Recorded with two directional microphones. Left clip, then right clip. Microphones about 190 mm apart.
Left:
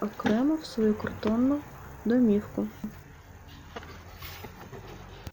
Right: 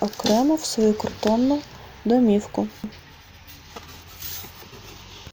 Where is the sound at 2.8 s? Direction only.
Centre (ahead or behind).